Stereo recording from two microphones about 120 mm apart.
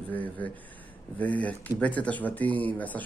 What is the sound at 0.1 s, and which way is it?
Speech, 15° left (ahead or behind).